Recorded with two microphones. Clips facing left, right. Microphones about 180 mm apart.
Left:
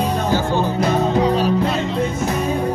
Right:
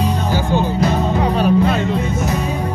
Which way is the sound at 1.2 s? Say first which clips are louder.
Right 2 dB; 55° right (ahead or behind).